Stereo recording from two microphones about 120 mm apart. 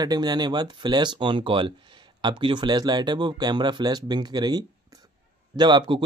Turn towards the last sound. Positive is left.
turn(degrees=-40)  # may be behind; listen again after turning